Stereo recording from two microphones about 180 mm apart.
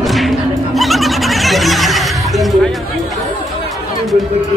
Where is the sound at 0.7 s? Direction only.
Centre (ahead or behind).